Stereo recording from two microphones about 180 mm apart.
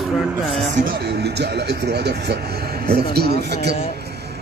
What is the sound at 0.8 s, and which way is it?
Speech, 65° right (ahead or behind).